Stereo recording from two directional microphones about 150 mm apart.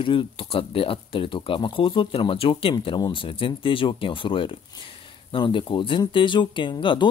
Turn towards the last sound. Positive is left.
turn(degrees=30)  # may be behind; listen again after turning